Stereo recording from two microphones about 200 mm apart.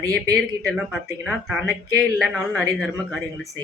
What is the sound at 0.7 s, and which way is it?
A man's voice, centre (ahead or behind).